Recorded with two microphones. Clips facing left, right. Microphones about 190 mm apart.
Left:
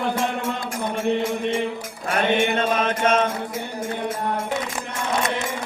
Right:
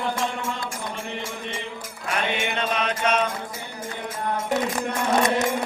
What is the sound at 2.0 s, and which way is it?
Mantra, 45° left (ahead or behind).